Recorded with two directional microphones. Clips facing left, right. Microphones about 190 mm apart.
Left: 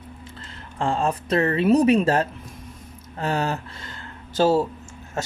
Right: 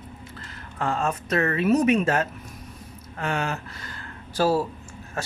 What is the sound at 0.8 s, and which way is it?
Speech, 30° left (ahead or behind).